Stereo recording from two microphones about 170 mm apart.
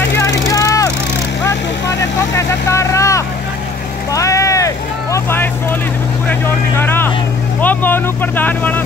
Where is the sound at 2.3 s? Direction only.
15° left (ahead or behind).